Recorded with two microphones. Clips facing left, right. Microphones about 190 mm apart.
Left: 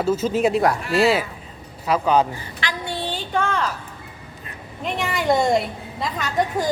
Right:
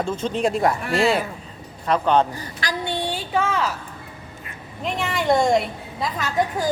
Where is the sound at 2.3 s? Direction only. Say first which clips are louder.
Even; 40° right (ahead or behind).